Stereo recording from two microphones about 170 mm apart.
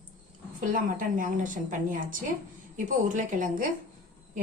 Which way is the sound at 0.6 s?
50° right (ahead or behind).